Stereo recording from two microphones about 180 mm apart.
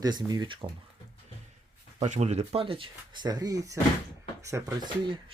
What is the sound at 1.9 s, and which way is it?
Speech, 40° right (ahead or behind).